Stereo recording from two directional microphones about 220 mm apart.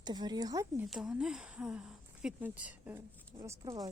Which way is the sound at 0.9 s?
5° right (ahead or behind).